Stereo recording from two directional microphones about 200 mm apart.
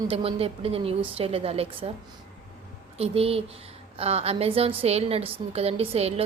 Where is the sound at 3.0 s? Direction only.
30° right (ahead or behind).